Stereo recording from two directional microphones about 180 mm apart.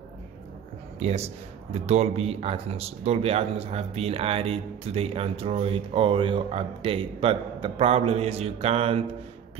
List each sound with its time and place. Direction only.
0.9 s speech: 35° right (ahead or behind)